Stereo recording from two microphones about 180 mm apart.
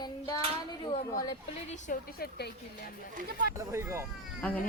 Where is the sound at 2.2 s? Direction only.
65° left (ahead or behind).